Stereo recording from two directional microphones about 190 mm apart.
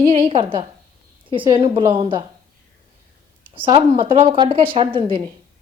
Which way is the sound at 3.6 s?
30° right (ahead or behind).